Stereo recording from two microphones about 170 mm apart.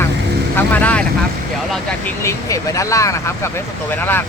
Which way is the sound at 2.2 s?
20° left (ahead or behind).